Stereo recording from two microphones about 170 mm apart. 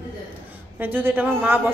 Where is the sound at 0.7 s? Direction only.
10° right (ahead or behind).